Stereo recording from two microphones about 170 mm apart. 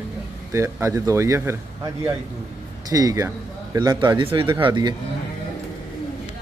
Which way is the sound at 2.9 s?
20° right (ahead or behind).